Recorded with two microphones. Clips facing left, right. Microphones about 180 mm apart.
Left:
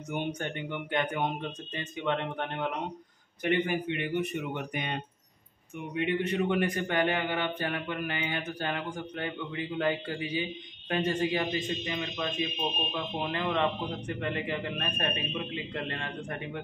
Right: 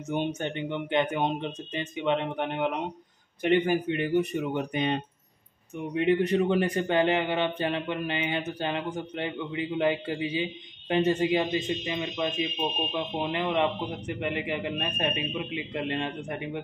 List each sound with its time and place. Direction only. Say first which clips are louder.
0.1 s a man's voice: right 4 dB; 25° right (ahead or behind)
3.4 s a man's voice: right 5 dB; 35° right (ahead or behind); by 16.6 s 20° right (ahead or behind)